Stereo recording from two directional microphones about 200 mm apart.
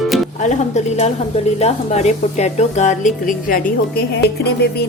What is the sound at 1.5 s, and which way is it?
Speech, 35° left (ahead or behind).